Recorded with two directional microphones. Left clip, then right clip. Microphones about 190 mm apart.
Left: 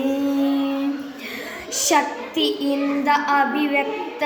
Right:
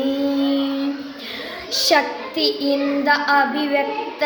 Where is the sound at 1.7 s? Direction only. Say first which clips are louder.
Right 2 dB; 15° right (ahead or behind).